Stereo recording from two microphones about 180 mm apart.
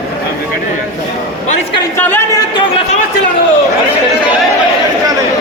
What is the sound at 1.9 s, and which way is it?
Speech, 10° left (ahead or behind).